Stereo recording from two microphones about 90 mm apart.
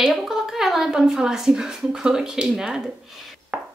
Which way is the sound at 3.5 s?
20° right (ahead or behind).